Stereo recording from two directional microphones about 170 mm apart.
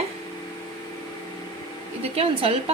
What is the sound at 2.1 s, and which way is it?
Speech, 35° right (ahead or behind).